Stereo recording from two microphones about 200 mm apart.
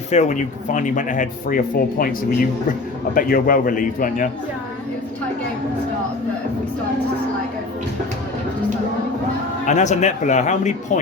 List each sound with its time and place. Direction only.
0.1 s speech: 35° left (ahead or behind)
3.2 s a man's voice: 45° left (ahead or behind)
9.6 s speech: 35° left (ahead or behind)